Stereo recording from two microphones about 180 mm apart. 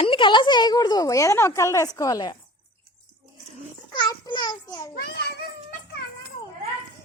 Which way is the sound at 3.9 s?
25° left (ahead or behind).